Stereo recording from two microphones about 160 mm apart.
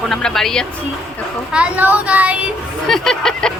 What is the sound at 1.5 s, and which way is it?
Speech, 10° right (ahead or behind).